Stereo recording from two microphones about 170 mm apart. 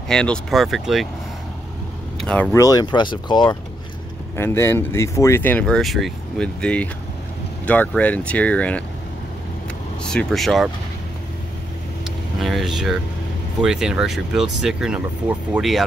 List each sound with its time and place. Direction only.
0.1 s speech: 5° left (ahead or behind)
2.1 s speech: 5° left (ahead or behind)
2.5 s speech: 20° left (ahead or behind)
4.4 s speech: 15° left (ahead or behind)
10.0 s speech: 5° left (ahead or behind)
12.4 s speech: centre (ahead or behind)